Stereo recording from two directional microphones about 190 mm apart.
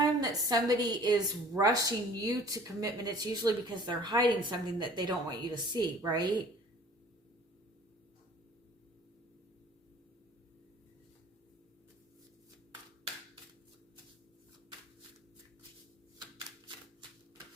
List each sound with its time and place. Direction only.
0.2 s a woman's voice: 20° right (ahead or behind)